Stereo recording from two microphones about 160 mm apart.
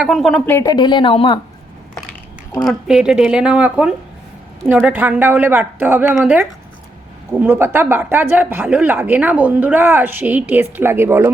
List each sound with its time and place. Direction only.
0.0 s speech: centre (ahead or behind)
0.4 s speech: 20° left (ahead or behind); by 1.4 s 35° left (ahead or behind)
2.6 s speech: 5° right (ahead or behind)